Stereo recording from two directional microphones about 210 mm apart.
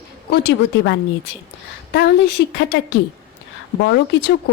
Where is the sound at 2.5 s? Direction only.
45° left (ahead or behind).